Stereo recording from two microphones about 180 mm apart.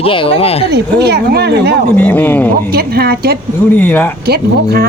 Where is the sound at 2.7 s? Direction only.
60° right (ahead or behind).